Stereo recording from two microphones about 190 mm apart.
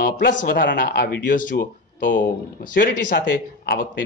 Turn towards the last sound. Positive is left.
turn(degrees=65)  # may be behind; listen again after turning